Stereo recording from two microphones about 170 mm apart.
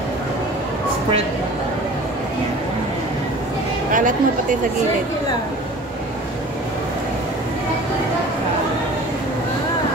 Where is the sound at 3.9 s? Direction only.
50° right (ahead or behind).